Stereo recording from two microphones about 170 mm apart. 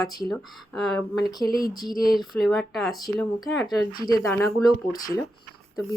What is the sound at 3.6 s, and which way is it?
Speech, 25° left (ahead or behind).